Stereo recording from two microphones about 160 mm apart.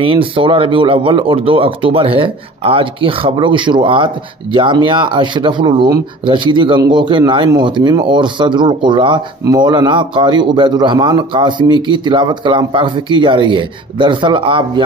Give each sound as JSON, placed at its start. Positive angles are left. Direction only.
{"t": 0.0, "sound": "speech", "side_deg": -35}